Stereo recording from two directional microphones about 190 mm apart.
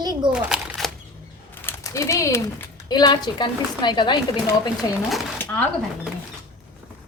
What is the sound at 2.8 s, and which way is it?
A woman's voice, 20° left (ahead or behind).